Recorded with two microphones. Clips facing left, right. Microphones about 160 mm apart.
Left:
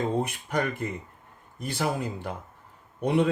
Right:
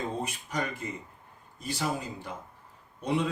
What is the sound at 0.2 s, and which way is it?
Speech, 60° left (ahead or behind).